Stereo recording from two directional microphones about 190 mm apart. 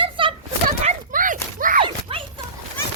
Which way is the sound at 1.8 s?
30° right (ahead or behind).